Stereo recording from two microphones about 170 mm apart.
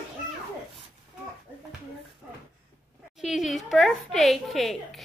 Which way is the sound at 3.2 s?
Centre (ahead or behind).